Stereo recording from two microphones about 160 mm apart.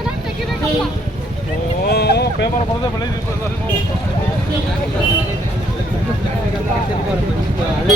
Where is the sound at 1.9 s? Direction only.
90° left.